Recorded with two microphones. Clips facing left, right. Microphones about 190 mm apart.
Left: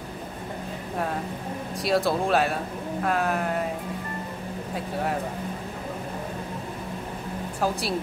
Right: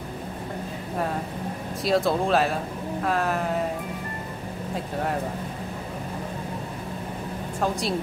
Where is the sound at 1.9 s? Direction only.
Centre (ahead or behind).